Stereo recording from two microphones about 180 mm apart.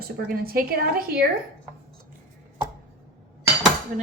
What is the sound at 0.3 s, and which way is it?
Speech, 55° right (ahead or behind).